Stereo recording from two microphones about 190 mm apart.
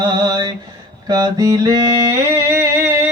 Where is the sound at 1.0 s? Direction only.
20° right (ahead or behind).